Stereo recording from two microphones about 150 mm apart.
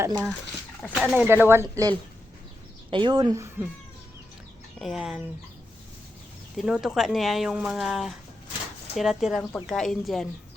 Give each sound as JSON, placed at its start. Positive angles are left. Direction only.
{"t": 0.1, "sound": "speech", "side_deg": 5}
{"t": 1.0, "sound": "speech", "side_deg": -5}
{"t": 2.9, "sound": "speech", "side_deg": -30}
{"t": 4.8, "sound": "speech", "side_deg": 0}
{"t": 6.6, "sound": "speech", "side_deg": 0}